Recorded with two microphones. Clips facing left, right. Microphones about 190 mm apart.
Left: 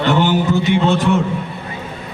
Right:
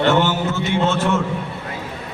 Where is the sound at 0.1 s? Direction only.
15° left (ahead or behind).